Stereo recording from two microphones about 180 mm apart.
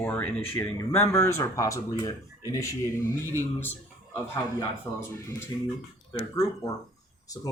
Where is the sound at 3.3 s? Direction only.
10° left (ahead or behind).